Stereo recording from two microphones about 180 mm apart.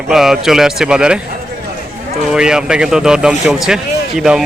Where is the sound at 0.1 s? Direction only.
Centre (ahead or behind).